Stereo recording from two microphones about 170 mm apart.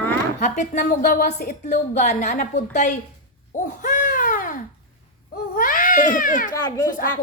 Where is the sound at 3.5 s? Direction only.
50° left (ahead or behind).